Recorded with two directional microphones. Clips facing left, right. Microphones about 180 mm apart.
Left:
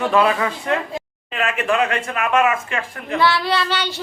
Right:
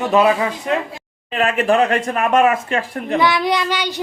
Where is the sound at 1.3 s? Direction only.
35° right (ahead or behind).